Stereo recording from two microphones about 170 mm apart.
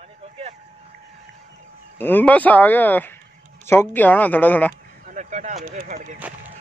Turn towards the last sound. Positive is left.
turn(degrees=-45)  # may be behind; listen again after turning